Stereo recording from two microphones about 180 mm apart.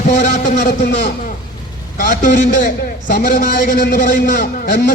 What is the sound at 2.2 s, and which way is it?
A man's voice, 45° left (ahead or behind).